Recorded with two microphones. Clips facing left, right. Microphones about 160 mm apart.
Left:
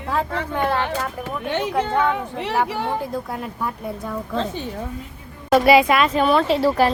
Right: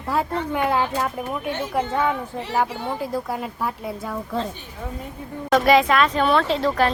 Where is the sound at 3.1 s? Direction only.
5° right (ahead or behind).